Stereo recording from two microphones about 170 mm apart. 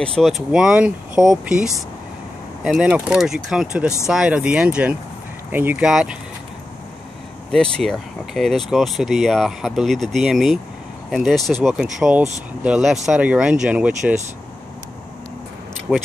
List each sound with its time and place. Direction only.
0.0 s speech: 5° left (ahead or behind)
7.5 s speech: 5° left (ahead or behind)
15.9 s speech: 5° left (ahead or behind)